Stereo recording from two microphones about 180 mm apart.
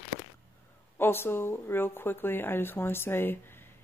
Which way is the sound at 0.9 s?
10° left (ahead or behind).